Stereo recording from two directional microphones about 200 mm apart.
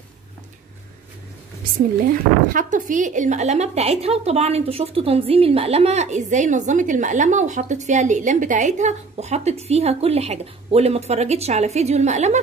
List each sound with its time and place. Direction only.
2.5 s a woman's voice: 40° right (ahead or behind)